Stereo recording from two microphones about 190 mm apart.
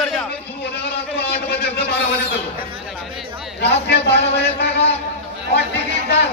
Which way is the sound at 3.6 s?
60° left (ahead or behind).